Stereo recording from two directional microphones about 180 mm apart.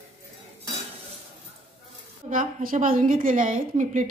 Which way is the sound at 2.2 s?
45° right (ahead or behind).